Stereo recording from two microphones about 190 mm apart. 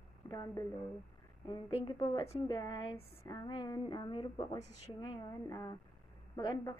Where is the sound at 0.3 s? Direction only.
20° left (ahead or behind).